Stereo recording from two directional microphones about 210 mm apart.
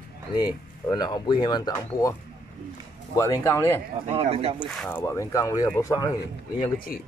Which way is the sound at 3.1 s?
15° left (ahead or behind).